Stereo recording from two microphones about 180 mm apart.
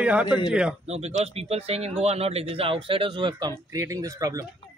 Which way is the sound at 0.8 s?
35° right (ahead or behind).